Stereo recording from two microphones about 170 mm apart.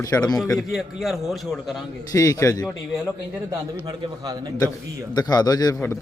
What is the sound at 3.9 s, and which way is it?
Speech, 25° right (ahead or behind).